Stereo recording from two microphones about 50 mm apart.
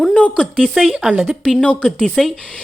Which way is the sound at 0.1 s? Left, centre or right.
Left.